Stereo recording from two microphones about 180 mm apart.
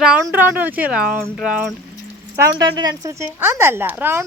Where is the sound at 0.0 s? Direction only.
10° right (ahead or behind).